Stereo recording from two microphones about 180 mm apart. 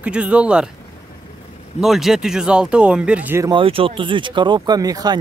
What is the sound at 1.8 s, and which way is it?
Speech, centre (ahead or behind).